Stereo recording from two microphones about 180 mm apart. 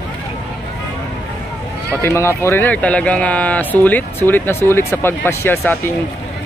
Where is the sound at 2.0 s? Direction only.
15° left (ahead or behind).